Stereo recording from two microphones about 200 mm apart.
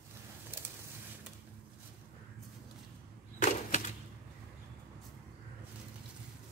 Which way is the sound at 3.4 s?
35° left (ahead or behind).